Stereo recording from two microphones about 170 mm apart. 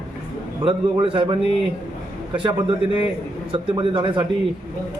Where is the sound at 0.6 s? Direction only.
30° right (ahead or behind).